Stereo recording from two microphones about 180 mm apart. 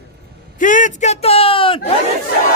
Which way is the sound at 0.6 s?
45° left (ahead or behind).